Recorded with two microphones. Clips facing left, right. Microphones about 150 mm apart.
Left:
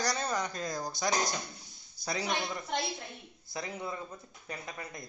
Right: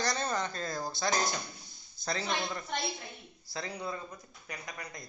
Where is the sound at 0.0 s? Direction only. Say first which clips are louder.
Even; 10° left (ahead or behind).